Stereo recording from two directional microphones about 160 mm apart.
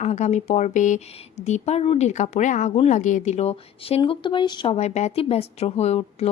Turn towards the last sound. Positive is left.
turn(degrees=40)  # may be behind; listen again after turning